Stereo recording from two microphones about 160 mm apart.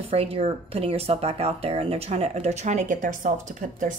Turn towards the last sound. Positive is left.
turn(degrees=-55)  # may be behind; listen again after turning